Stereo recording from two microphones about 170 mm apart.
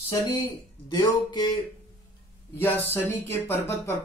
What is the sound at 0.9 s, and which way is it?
Speech, 25° left (ahead or behind).